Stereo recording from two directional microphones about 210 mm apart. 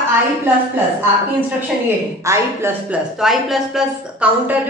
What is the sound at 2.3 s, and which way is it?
Speech, 15° right (ahead or behind).